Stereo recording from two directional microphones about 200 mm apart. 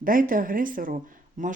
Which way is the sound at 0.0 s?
45° right (ahead or behind).